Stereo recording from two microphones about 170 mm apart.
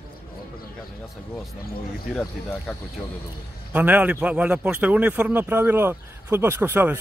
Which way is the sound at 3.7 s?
10° right (ahead or behind).